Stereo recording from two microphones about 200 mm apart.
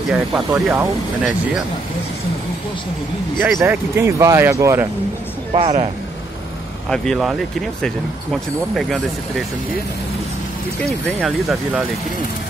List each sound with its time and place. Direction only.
0.1 s speech: 5° right (ahead or behind)
3.3 s speech: 5° right (ahead or behind)
5.5 s speech: 30° right (ahead or behind)
6.9 s speech: centre (ahead or behind)
10.8 s speech: centre (ahead or behind)